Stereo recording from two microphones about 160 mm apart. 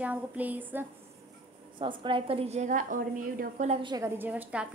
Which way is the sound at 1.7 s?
30° right (ahead or behind).